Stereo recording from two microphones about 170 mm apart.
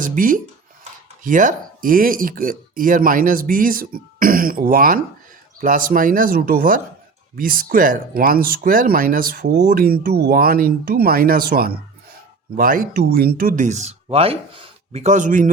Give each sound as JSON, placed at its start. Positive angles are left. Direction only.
{"t": 0.0, "sound": "speech", "side_deg": -50}